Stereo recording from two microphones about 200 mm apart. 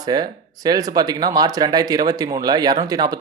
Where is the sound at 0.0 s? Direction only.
20° right (ahead or behind).